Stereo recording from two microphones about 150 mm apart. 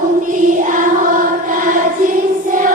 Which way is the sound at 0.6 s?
60° right (ahead or behind).